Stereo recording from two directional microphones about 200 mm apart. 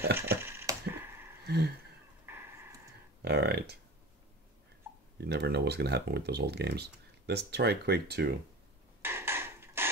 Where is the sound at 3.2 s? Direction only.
55° right (ahead or behind).